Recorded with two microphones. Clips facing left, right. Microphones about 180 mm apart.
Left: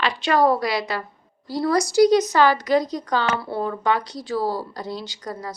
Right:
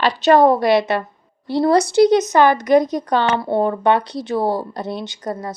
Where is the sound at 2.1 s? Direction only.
20° right (ahead or behind).